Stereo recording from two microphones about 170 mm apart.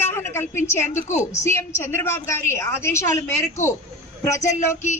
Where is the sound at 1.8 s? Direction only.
15° left (ahead or behind).